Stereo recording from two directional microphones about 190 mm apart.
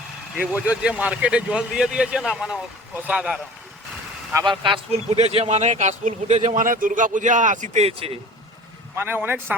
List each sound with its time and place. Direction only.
0.7 s a man's voice: 5° right (ahead or behind)
4.4 s speech: 25° right (ahead or behind)
9.0 s speech: 10° right (ahead or behind)